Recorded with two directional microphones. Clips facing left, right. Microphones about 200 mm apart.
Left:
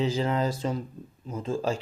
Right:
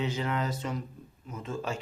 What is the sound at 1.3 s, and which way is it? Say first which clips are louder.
Speech: left 6 dB; 30° left (ahead or behind).